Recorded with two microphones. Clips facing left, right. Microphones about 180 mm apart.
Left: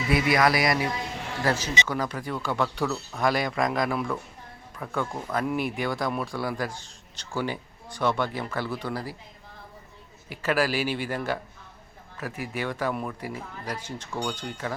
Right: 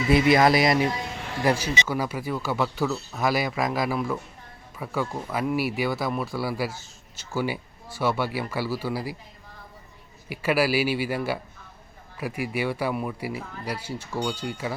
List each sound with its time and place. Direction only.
0.1 s speech: 25° right (ahead or behind)
1.4 s speech: 10° right (ahead or behind)
10.2 s speech: 10° right (ahead or behind)